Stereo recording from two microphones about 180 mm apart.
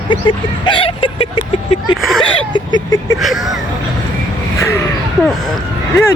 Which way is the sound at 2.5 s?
20° left (ahead or behind).